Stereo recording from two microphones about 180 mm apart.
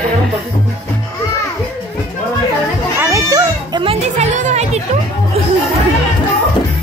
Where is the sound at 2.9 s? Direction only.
15° right (ahead or behind); by 4.8 s 40° right (ahead or behind).